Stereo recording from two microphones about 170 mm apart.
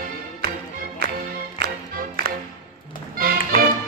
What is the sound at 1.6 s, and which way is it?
Music, 65° right (ahead or behind).